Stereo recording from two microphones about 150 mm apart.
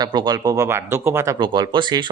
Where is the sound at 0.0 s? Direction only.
25° right (ahead or behind).